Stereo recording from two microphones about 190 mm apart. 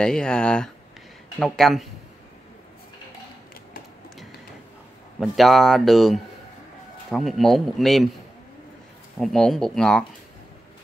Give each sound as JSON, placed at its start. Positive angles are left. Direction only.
{"t": 0.0, "sound": "speech", "side_deg": 5}
{"t": 5.2, "sound": "speech", "side_deg": 0}
{"t": 9.2, "sound": "speech", "side_deg": 0}